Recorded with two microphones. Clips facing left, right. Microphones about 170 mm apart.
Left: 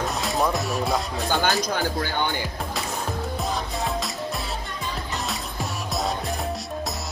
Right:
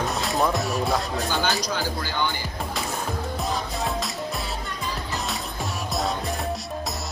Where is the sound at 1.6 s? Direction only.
55° left (ahead or behind).